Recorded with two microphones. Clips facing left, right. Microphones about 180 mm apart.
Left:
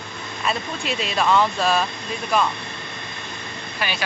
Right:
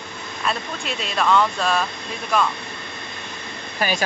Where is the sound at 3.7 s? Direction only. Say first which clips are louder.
Right 5 dB; 40° right (ahead or behind).